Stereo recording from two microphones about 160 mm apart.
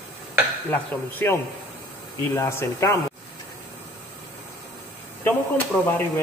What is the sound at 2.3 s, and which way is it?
Speech, 15° left (ahead or behind).